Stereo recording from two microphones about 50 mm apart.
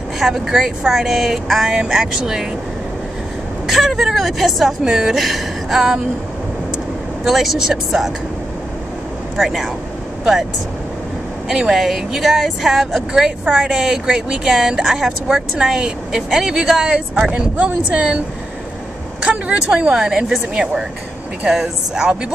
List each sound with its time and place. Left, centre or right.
0.2 s speech: centre
3.6 s speech: centre
7.2 s speech: centre
9.4 s speech: centre
11.4 s speech: centre
13.6 s speech: centre
17.6 s speech: right
19.2 s speech: right; by 20.4 s centre
21.5 s speech: centre